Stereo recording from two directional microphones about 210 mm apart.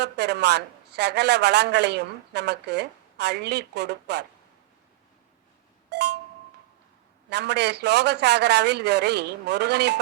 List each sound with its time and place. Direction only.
0.0 s a woman's voice: 55° right (ahead or behind)
5.9 s a sound: 55° right (ahead or behind)
7.3 s a woman's voice: 55° right (ahead or behind)